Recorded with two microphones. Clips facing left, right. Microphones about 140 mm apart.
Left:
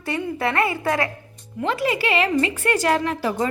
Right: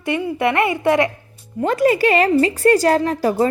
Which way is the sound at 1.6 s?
45° right (ahead or behind).